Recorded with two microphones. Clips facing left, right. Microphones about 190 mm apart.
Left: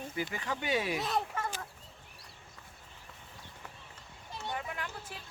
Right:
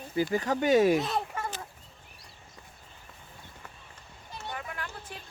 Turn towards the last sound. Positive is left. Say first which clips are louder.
# right 1 dB
turn(degrees=15)  # may be behind; listen again after turning